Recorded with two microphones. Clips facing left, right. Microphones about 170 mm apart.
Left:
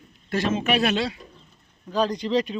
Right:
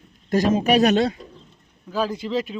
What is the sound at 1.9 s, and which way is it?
Speech, 5° right (ahead or behind).